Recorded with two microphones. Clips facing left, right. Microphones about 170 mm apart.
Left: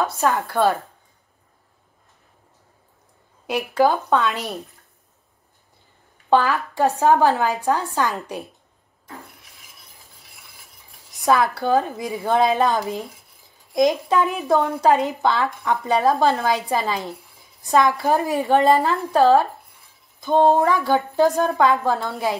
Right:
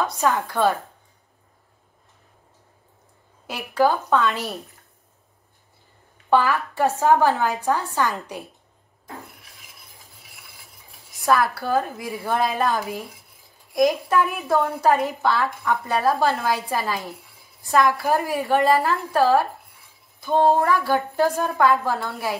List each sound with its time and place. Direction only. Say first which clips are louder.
0.2 s a woman's voice: left 1 dB; 10° left (ahead or behind)
3.4 s a woman's voice: left 2 dB; 15° left (ahead or behind)
6.3 s a woman's voice: left 1 dB; 20° left (ahead or behind)
11.2 s a woman's voice: left 2 dB; 20° left (ahead or behind)
17.6 s a sound: left 2 dB; 20° left (ahead or behind)
18.0 s a woman's voice: left 2 dB; 20° left (ahead or behind)